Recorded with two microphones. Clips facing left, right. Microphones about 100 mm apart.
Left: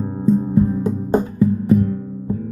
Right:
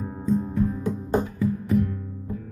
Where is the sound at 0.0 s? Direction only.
25° left (ahead or behind).